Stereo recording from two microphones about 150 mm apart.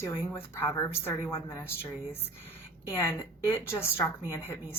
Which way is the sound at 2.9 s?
15° left (ahead or behind).